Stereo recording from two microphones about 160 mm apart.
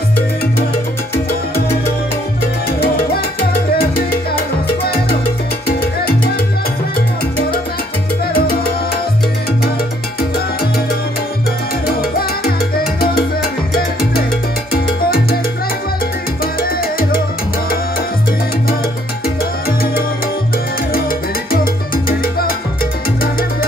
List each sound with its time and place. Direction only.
3.7 s salsa music: 70° left (ahead or behind)
8.3 s salsa music: 70° left (ahead or behind)
12.0 s salsa music: 70° left (ahead or behind)
14.7 s salsa music: 70° left (ahead or behind)
21.5 s salsa music: 65° left (ahead or behind)